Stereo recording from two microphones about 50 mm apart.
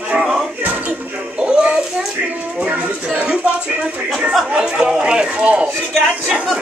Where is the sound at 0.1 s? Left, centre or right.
Centre.